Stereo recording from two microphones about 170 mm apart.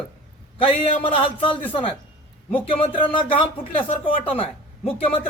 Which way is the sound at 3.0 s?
30° left (ahead or behind).